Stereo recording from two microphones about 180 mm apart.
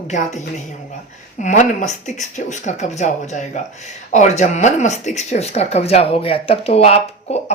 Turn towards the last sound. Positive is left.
turn(degrees=35)  # may be behind; listen again after turning